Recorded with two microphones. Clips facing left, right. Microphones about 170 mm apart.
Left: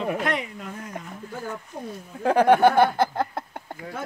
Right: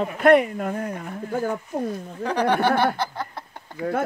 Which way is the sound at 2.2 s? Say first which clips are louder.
Left 5 dB; 50° left (ahead or behind).